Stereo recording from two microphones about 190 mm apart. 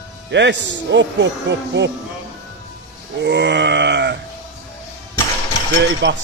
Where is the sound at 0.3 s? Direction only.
65° right (ahead or behind).